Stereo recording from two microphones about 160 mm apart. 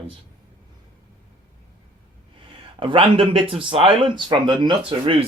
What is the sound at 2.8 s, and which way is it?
Speech, 35° right (ahead or behind).